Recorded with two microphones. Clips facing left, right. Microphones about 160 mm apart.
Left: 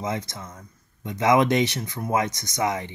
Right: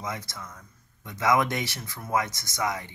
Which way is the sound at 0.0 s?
20° left (ahead or behind).